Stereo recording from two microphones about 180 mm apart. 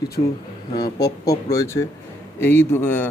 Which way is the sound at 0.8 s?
20° left (ahead or behind).